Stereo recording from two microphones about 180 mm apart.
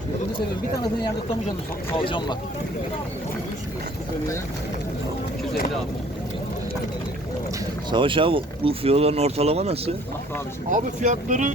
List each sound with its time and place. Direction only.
2.0 s speech: 25° left (ahead or behind)
7.9 s speech: 25° right (ahead or behind); by 11.5 s 45° right (ahead or behind)